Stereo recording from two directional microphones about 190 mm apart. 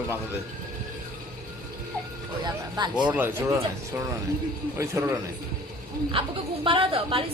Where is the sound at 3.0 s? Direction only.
5° right (ahead or behind).